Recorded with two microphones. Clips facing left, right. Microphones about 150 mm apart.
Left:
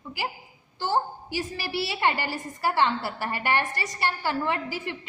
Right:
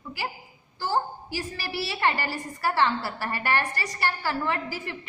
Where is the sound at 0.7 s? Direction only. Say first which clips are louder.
Left 1 dB; 20° left (ahead or behind).